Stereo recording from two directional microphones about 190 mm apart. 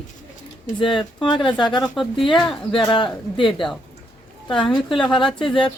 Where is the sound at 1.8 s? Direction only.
Centre (ahead or behind).